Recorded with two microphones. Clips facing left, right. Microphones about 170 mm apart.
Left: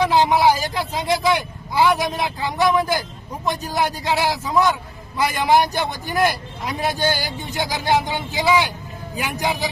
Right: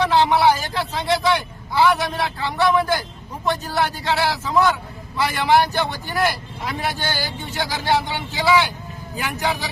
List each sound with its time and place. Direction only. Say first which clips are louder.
0.0 s a man's voice: even; 10° left (ahead or behind)